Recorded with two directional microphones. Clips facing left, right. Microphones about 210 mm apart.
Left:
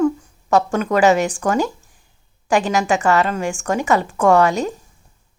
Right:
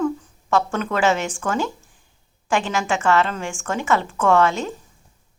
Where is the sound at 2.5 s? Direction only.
40° left (ahead or behind).